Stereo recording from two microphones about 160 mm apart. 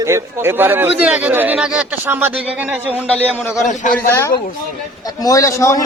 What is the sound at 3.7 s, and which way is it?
Speech, 50° left (ahead or behind).